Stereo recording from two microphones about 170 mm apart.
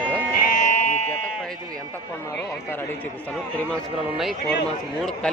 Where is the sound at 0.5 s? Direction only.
45° left (ahead or behind).